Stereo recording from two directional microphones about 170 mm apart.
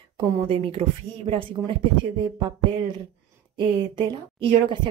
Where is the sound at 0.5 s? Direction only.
35° right (ahead or behind).